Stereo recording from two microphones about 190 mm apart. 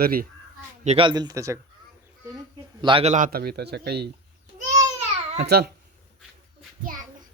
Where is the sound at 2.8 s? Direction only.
30° right (ahead or behind); by 4.1 s 60° right (ahead or behind).